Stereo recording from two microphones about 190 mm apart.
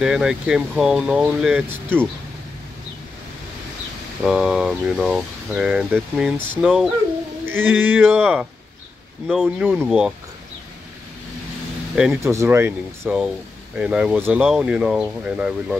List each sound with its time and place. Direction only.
0.0 s speech: 5° right (ahead or behind)
4.3 s speech: centre (ahead or behind)
11.9 s speech: 5° right (ahead or behind)
12.2 s speech: 15° right (ahead or behind)